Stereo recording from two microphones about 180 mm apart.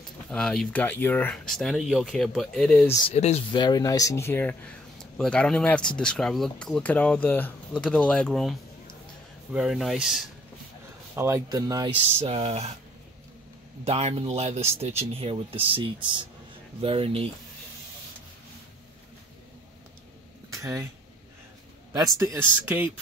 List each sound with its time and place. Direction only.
0.3 s speech: 5° left (ahead or behind)
3.1 s speech: 35° left (ahead or behind)
3.5 s speech: 25° left (ahead or behind); by 10.2 s centre (ahead or behind)
11.1 s speech: 15° right (ahead or behind)
12.2 s speech: 35° right (ahead or behind)
13.8 s speech: 35° right (ahead or behind)
20.4 s a sound: 15° right (ahead or behind)
21.9 s speech: 20° right (ahead or behind)